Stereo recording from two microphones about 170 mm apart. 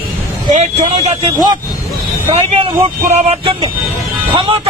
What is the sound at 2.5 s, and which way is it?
Speech, 35° right (ahead or behind).